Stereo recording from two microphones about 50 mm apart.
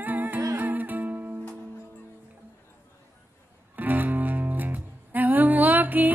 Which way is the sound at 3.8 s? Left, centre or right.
Right.